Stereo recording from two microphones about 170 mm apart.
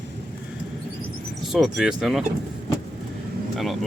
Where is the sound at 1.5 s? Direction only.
Centre (ahead or behind).